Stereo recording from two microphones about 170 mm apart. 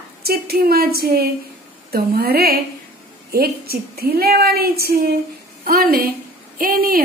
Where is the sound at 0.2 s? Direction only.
65° right (ahead or behind).